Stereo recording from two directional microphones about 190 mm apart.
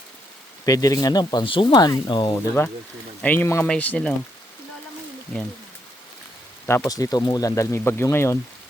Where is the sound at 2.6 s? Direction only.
10° left (ahead or behind).